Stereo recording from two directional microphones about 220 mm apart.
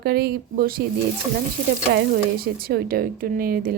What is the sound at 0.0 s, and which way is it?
Speech, 45° right (ahead or behind).